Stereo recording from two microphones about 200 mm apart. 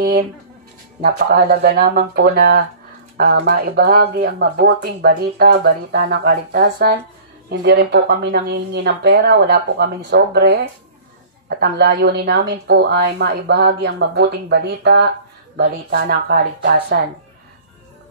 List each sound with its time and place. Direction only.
1.0 s a woman's voice: 50° right (ahead or behind)